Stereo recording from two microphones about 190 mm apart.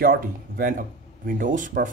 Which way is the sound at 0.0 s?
50° right (ahead or behind).